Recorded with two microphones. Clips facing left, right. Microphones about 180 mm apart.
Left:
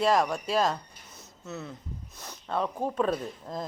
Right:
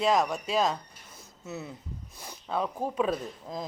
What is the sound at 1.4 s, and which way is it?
Speech, 10° right (ahead or behind).